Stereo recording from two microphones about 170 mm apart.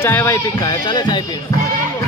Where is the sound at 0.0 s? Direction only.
15° left (ahead or behind).